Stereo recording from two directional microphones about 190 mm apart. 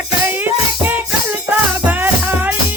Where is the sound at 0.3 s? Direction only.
10° right (ahead or behind).